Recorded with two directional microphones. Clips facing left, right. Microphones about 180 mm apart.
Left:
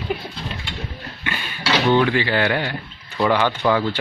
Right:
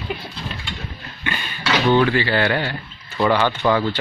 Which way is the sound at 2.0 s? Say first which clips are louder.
Right 1 dB; 15° left (ahead or behind).